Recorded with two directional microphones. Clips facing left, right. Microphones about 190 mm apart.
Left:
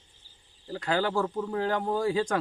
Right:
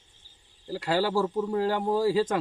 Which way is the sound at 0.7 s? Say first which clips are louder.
Right 2 dB; 5° right (ahead or behind).